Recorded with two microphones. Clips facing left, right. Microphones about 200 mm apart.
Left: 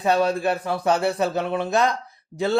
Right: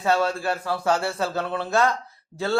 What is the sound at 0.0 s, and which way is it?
A man's voice, 15° left (ahead or behind).